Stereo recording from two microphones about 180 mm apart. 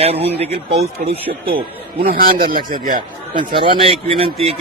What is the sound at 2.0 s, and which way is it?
A man's voice, 55° right (ahead or behind).